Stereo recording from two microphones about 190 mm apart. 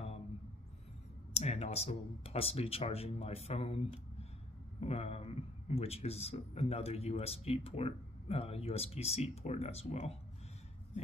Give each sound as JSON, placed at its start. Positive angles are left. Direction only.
{"t": 1.3, "sound": "a man's voice", "side_deg": 35}